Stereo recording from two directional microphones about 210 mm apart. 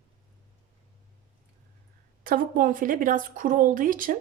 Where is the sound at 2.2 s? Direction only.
40° right (ahead or behind).